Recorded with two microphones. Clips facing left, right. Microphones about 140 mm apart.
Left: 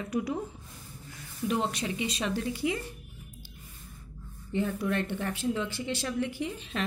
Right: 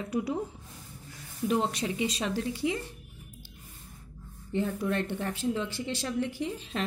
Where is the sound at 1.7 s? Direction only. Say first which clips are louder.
Right 2 dB; 35° right (ahead or behind).